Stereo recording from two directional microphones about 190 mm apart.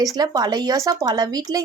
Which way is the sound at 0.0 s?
20° right (ahead or behind).